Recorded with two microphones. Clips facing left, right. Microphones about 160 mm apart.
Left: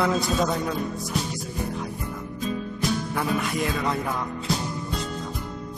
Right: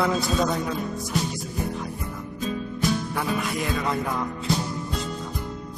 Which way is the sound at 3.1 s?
Centre (ahead or behind).